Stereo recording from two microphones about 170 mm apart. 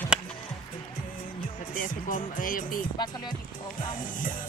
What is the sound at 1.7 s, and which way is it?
Music, 50° left (ahead or behind).